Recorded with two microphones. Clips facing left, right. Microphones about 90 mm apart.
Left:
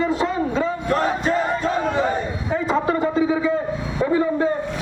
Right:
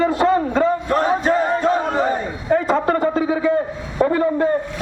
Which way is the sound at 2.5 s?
50° right (ahead or behind).